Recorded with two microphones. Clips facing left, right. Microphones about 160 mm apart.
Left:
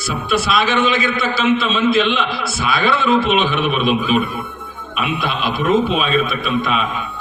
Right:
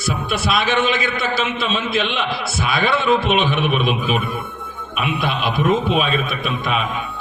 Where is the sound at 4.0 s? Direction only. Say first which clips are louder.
Left 4 dB; centre (ahead or behind).